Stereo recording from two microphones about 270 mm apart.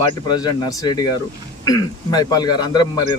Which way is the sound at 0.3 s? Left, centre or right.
Centre.